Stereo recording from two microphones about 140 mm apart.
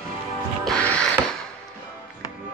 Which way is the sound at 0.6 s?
5° left (ahead or behind).